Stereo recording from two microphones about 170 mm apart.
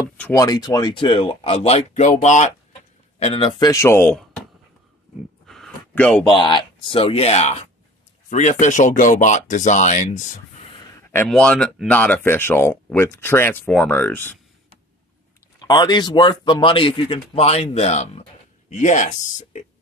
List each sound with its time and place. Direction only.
0.2 s speech: 15° left (ahead or behind); by 2.5 s 45° left (ahead or behind)
3.2 s speech: 35° left (ahead or behind); by 4.2 s 10° left (ahead or behind)
5.5 s a sound: 5° left (ahead or behind)
6.2 s speech: 30° left (ahead or behind); by 10.4 s 45° left (ahead or behind)
11.2 s speech: 5° left (ahead or behind)
15.6 s speech: 25° left (ahead or behind); by 19.6 s 45° left (ahead or behind)